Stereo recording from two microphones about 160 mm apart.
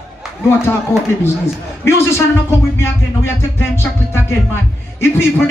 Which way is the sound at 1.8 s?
15° left (ahead or behind).